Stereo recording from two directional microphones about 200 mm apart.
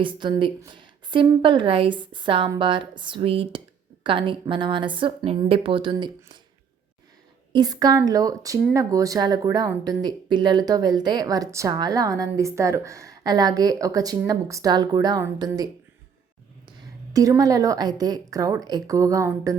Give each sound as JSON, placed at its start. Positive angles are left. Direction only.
{"t": 0.0, "sound": "speech", "side_deg": -25}
{"t": 7.5, "sound": "a woman's voice", "side_deg": -20}